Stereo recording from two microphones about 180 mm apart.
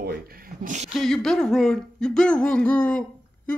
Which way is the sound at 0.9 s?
5° left (ahead or behind).